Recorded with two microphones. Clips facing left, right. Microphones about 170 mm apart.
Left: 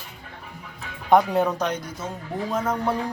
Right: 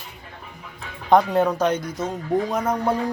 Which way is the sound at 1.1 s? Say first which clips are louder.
Right 1 dB; 10° left (ahead or behind).